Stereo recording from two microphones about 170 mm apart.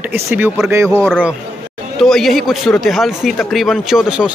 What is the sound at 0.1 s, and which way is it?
Speech, 10° right (ahead or behind).